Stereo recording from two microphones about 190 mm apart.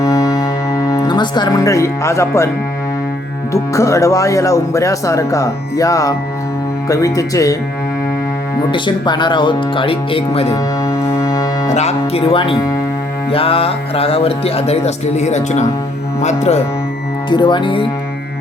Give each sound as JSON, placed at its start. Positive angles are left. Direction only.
{"t": 0.0, "sound": "music", "side_deg": 20}
{"t": 3.5, "sound": "speech", "side_deg": 15}
{"t": 8.7, "sound": "speech", "side_deg": 25}
{"t": 11.2, "sound": "music", "side_deg": 15}
{"t": 11.7, "sound": "speech", "side_deg": 35}
{"t": 13.3, "sound": "music", "side_deg": 30}
{"t": 17.2, "sound": "speech", "side_deg": 25}